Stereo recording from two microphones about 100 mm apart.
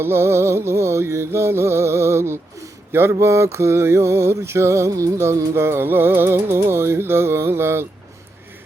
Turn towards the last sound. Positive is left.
turn(degrees=-25)  # may be behind; listen again after turning